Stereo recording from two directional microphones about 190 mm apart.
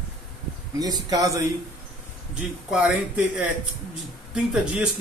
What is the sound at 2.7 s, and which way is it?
Speech, 5° right (ahead or behind).